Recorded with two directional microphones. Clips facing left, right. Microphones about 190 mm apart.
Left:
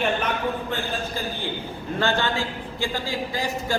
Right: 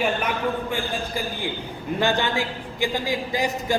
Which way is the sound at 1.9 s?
15° right (ahead or behind).